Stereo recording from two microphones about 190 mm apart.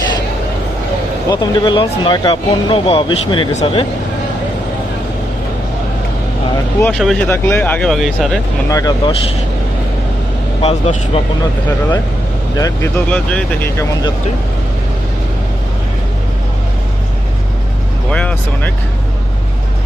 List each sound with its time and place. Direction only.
1.3 s speech: 25° left (ahead or behind)
6.8 s speech: centre (ahead or behind)
8.7 s speech: 20° left (ahead or behind)
10.6 s speech: 35° left (ahead or behind)
12.5 s speech: 20° left (ahead or behind)
13.1 s speech: 5° left (ahead or behind)
18.1 s speech: 5° left (ahead or behind)